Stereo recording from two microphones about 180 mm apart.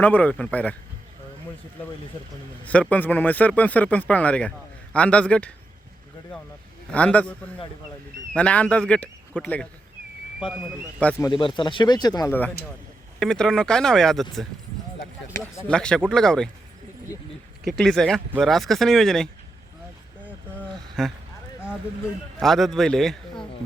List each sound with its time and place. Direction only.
0.0 s speech: 10° left (ahead or behind)
2.9 s speech: 10° left (ahead or behind)
6.9 s speech: 5° left (ahead or behind)
11.3 s speech: 25° left (ahead or behind)
13.1 s speech: 5° left (ahead or behind)
15.4 s speech: 15° left (ahead or behind)
15.7 s speech: 5° left (ahead or behind)
17.7 s speech: 5° left (ahead or behind)
20.6 s a sound: centre (ahead or behind)
22.4 s speech: centre (ahead or behind)